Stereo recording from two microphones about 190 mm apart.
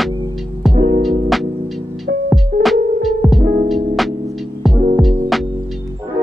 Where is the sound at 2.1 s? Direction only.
70° right (ahead or behind).